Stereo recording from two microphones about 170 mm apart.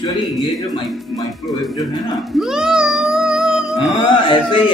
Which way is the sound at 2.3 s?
5° right (ahead or behind).